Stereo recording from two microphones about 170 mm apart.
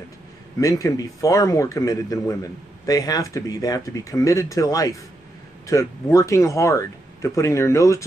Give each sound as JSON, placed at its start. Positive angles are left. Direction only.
{"t": 0.6, "sound": "a man's voice", "side_deg": 20}